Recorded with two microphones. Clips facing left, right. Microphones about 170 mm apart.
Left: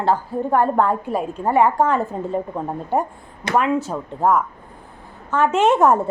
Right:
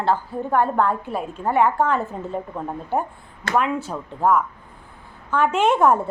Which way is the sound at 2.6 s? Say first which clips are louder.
Even; 30° left (ahead or behind).